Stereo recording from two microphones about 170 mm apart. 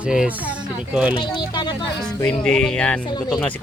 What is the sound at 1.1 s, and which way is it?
Speech, 30° left (ahead or behind).